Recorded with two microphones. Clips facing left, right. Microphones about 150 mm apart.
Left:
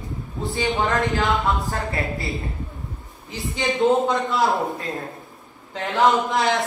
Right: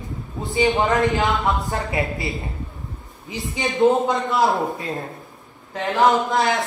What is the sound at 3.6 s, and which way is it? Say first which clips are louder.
A man's voice: right 1 dB; centre (ahead or behind).